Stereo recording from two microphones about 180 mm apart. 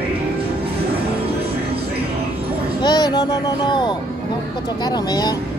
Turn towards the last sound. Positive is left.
turn(degrees=25)  # may be behind; listen again after turning